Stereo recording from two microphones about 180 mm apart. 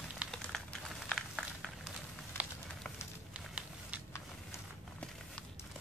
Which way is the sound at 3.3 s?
5° right (ahead or behind).